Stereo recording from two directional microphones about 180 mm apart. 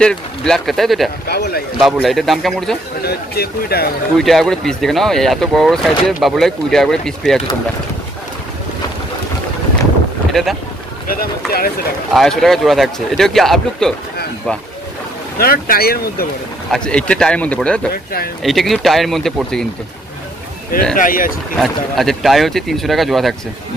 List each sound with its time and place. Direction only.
0.0 s speech: 5° left (ahead or behind)
1.2 s speech: 60° left (ahead or behind)
1.8 s speech: centre (ahead or behind)
3.0 s speech: 60° left (ahead or behind)
4.2 s speech: centre (ahead or behind)
11.1 s speech: 55° left (ahead or behind)
12.1 s speech: centre (ahead or behind)
15.3 s speech: 55° left (ahead or behind)
16.7 s speech: 5° left (ahead or behind)
20.9 s speech: 50° left (ahead or behind)
21.5 s speech: centre (ahead or behind)